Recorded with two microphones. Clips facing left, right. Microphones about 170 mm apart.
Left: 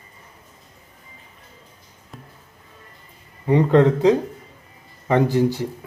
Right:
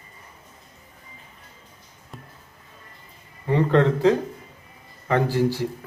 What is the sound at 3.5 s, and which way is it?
Speech, 15° left (ahead or behind).